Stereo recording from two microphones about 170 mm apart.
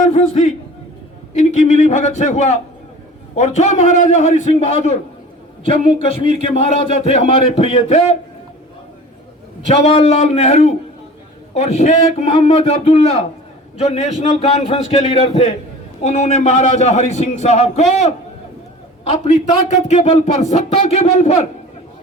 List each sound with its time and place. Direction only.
0.0 s a sound: 50° left (ahead or behind)
1.4 s a man's voice: 45° left (ahead or behind)
9.8 s a man's voice: 35° left (ahead or behind)
19.0 s a man's voice: 40° left (ahead or behind)